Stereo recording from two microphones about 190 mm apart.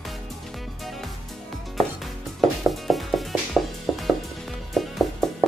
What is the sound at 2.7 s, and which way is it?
Music, centre (ahead or behind).